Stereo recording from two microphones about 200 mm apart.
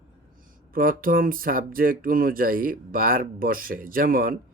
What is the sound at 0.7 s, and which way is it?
Speech, 45° right (ahead or behind).